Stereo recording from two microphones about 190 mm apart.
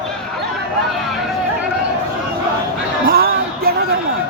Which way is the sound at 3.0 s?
50° right (ahead or behind).